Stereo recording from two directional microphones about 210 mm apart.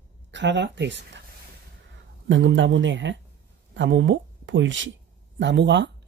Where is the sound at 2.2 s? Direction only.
60° right (ahead or behind).